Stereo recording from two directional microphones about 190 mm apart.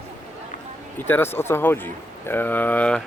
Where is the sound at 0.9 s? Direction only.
10° left (ahead or behind).